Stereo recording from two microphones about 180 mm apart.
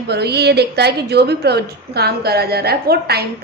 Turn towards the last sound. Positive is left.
turn(degrees=-60)  # may be behind; listen again after turning